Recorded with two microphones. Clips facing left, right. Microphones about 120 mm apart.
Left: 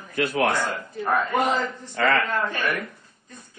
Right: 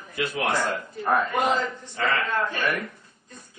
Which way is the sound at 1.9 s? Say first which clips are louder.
Left 4 dB; 70° left (ahead or behind).